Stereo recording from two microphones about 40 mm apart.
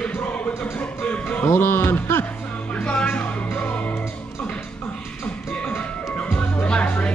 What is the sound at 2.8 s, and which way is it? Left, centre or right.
Music, left.